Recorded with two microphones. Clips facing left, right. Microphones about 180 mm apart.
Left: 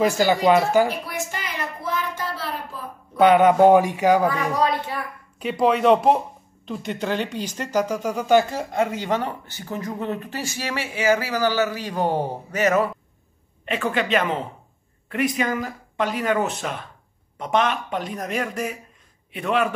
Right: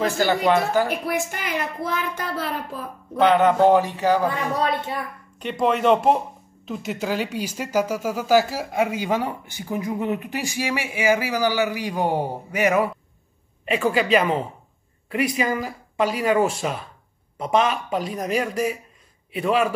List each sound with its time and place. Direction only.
0.0 s speech: 10° left (ahead or behind)
0.8 s speech: 55° right (ahead or behind)
3.2 s speech: 10° left (ahead or behind)
4.3 s speech: 25° right (ahead or behind)
5.4 s speech: centre (ahead or behind)